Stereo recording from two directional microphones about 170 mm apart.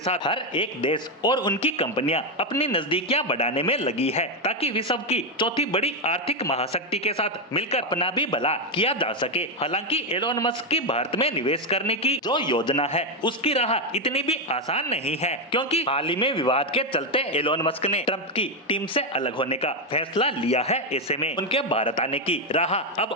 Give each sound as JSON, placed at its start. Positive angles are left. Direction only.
{"t": 0.0, "sound": "a man's voice", "side_deg": 30}